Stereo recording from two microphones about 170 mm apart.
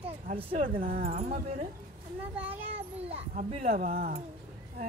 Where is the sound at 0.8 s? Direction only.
55° right (ahead or behind).